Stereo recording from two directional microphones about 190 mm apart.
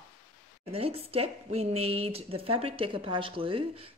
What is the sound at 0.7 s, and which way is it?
Speech, 30° right (ahead or behind).